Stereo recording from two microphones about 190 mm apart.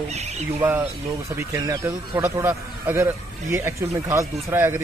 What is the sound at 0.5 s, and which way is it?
Speech, 10° right (ahead or behind).